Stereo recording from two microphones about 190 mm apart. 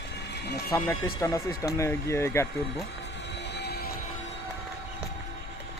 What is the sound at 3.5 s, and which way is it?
Music, 60° left (ahead or behind).